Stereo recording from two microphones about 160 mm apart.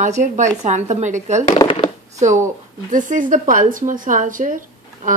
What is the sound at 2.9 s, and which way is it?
Speech, 55° right (ahead or behind).